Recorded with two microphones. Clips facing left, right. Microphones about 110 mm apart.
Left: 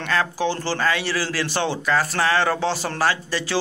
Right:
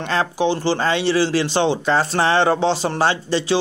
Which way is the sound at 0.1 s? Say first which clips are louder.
Right 3 dB; 20° right (ahead or behind).